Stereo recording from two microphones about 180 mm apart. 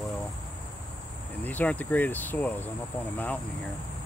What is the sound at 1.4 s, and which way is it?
Speech, 10° left (ahead or behind).